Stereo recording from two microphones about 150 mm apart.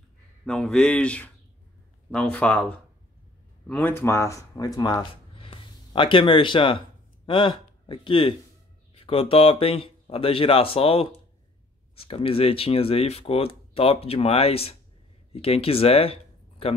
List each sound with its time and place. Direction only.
0.5 s speech: 5° left (ahead or behind)
3.6 s speech: 10° left (ahead or behind); by 16.7 s 40° left (ahead or behind)